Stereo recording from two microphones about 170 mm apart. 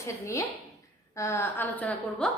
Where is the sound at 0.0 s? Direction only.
15° left (ahead or behind).